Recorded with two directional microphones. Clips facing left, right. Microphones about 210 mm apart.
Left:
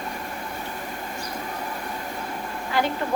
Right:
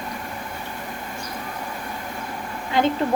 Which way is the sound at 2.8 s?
20° right (ahead or behind).